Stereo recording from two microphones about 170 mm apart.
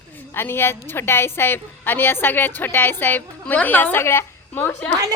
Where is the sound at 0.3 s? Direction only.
15° left (ahead or behind).